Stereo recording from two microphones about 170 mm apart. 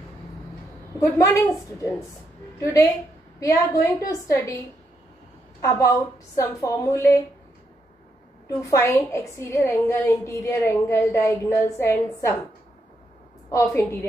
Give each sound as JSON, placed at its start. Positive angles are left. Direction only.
{"t": 0.9, "sound": "a woman's voice", "side_deg": 20}
{"t": 2.6, "sound": "a woman's voice", "side_deg": 15}
{"t": 5.6, "sound": "a woman's voice", "side_deg": 20}
{"t": 8.6, "sound": "a woman's voice", "side_deg": 15}
{"t": 13.5, "sound": "a woman's voice", "side_deg": 20}